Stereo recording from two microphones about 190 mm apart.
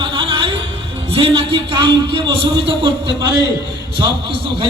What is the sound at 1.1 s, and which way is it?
A man's voice, 30° right (ahead or behind).